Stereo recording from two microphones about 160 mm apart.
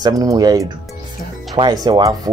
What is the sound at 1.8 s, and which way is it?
Speech, 25° right (ahead or behind).